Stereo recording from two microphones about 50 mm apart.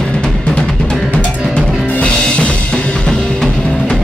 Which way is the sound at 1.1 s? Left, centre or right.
Left.